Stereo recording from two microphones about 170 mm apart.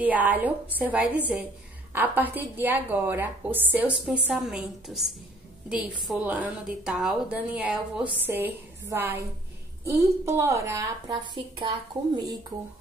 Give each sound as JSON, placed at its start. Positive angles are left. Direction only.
{"t": 0.0, "sound": "a woman's voice", "side_deg": -10}